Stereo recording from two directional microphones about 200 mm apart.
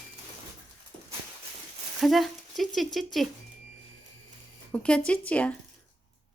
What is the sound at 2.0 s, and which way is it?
Speech, centre (ahead or behind).